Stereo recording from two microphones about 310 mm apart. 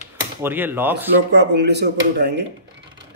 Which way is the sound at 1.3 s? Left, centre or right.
Right.